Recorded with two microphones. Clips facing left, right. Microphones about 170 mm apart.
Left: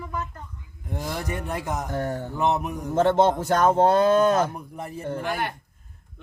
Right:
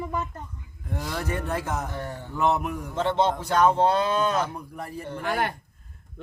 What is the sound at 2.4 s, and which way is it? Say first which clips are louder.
Mantra: right 1 dB; 20° left (ahead or behind).